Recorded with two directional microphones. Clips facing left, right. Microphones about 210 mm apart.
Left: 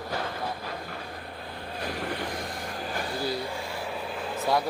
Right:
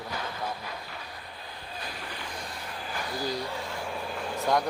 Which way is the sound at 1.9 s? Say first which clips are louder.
Left 7 dB; 55° left (ahead or behind).